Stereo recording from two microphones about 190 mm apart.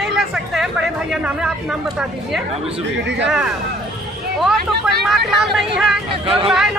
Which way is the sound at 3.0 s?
70° right (ahead or behind).